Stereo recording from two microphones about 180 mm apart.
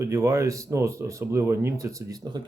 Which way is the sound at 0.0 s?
15° right (ahead or behind).